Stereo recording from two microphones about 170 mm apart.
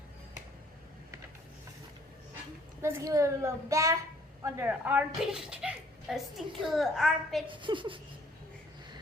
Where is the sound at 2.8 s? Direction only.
15° right (ahead or behind); by 7.4 s centre (ahead or behind).